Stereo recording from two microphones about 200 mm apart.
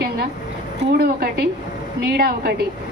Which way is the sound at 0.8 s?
50° right (ahead or behind).